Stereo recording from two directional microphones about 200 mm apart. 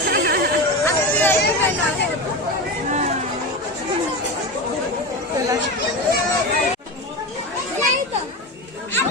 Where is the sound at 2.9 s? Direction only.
35° right (ahead or behind).